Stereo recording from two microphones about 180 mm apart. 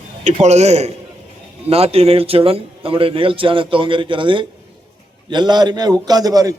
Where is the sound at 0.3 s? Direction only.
40° right (ahead or behind).